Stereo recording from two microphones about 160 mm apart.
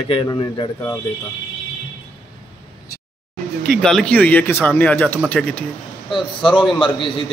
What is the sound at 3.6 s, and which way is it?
Speech, 5° left (ahead or behind).